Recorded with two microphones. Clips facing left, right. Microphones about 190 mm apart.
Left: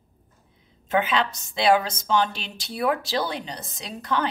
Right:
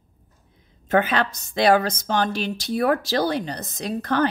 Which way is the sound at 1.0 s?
45° right (ahead or behind).